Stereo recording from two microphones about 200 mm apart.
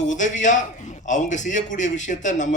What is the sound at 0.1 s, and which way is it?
A man's voice, 40° left (ahead or behind).